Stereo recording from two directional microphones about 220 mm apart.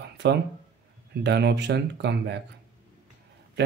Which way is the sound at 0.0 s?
50° right (ahead or behind).